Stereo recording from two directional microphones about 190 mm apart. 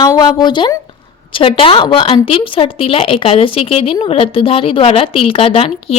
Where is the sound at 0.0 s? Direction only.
20° left (ahead or behind).